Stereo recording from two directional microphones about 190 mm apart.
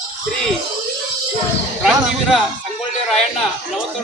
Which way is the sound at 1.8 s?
Centre (ahead or behind).